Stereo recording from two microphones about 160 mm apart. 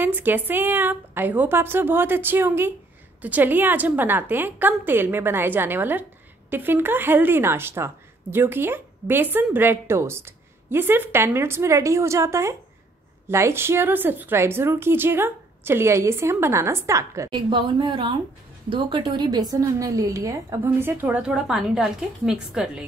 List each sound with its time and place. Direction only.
0.0 s a woman's voice: 10° right (ahead or behind)
17.3 s a woman's voice: 30° right (ahead or behind); by 22.8 s 5° right (ahead or behind)